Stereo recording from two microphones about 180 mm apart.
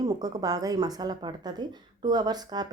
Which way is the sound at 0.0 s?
20° right (ahead or behind).